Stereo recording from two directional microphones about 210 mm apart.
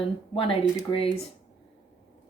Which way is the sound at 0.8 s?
25° left (ahead or behind).